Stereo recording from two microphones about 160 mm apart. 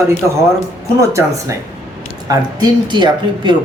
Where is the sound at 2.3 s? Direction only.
25° right (ahead or behind).